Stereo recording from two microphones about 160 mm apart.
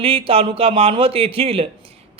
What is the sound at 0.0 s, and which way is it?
A man's voice, 35° right (ahead or behind).